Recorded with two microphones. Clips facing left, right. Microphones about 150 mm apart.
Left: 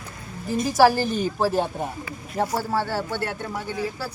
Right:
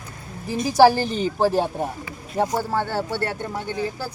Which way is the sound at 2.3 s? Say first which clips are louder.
Right 2 dB; 15° right (ahead or behind).